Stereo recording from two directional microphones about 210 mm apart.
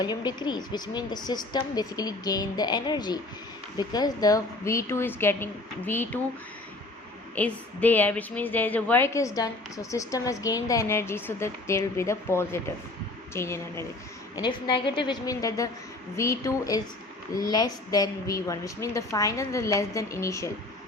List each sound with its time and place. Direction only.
0.0 s a woman's voice: 20° left (ahead or behind)
7.3 s a woman's voice: 5° left (ahead or behind)